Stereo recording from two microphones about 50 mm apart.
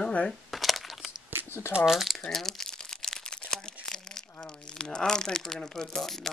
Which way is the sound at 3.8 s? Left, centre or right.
Centre.